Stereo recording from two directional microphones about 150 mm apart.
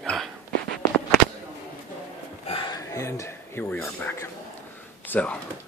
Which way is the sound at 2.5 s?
35° left (ahead or behind).